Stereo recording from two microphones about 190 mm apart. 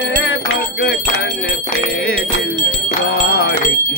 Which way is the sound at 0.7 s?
55° left (ahead or behind).